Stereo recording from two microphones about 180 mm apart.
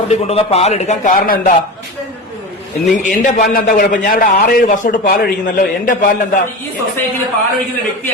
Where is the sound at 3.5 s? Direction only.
50° left (ahead or behind).